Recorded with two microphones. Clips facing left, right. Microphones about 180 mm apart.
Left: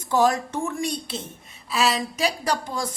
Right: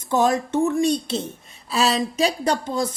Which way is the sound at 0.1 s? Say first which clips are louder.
Right 1 dB; 20° right (ahead or behind).